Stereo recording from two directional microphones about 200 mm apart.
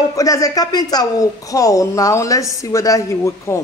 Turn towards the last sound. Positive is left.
turn(degrees=15)  # may be behind; listen again after turning